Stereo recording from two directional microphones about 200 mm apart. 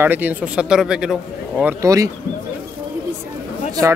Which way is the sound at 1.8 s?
15° right (ahead or behind).